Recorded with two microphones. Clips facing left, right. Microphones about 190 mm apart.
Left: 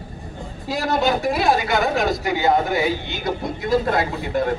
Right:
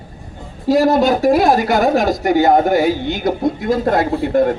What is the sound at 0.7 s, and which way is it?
A man's voice, 45° right (ahead or behind).